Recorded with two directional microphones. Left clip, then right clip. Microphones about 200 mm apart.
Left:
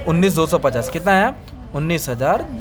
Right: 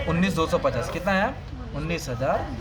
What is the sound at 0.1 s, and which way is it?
Speech, 50° left (ahead or behind).